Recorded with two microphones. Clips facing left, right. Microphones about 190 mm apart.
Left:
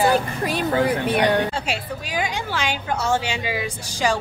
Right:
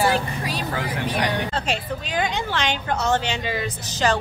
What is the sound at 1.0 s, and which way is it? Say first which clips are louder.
Speech: left 5 dB; 60° left (ahead or behind).